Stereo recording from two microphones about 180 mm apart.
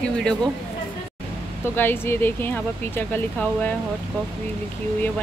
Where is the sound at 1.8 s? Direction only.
10° left (ahead or behind).